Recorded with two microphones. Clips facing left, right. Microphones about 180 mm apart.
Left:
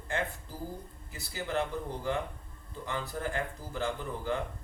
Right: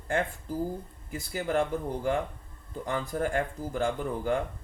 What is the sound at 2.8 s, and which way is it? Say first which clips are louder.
Speech: right 5 dB; 50° right (ahead or behind).